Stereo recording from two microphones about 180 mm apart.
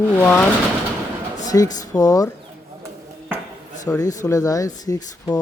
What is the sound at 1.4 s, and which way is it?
Speech, 20° left (ahead or behind).